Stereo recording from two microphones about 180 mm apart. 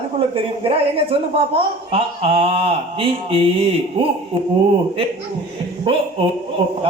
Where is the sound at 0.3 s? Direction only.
30° right (ahead or behind).